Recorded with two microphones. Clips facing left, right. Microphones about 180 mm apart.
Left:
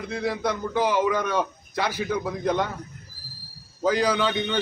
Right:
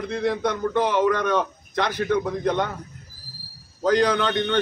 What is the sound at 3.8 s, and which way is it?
Speech, 5° left (ahead or behind).